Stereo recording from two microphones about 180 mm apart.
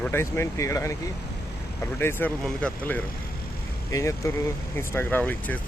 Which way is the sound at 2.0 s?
10° left (ahead or behind).